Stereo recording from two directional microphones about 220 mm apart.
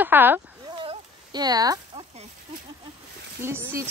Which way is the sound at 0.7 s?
25° right (ahead or behind).